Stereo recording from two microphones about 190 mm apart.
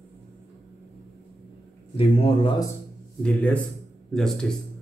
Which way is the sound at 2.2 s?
25° left (ahead or behind).